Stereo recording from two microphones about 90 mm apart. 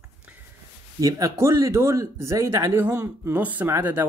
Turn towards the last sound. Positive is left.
turn(degrees=-25)  # may be behind; listen again after turning